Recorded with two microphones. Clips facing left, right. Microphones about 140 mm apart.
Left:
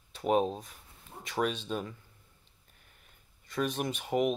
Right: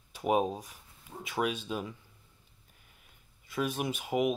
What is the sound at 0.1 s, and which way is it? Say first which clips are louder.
Speech: left 1 dB; 10° right (ahead or behind).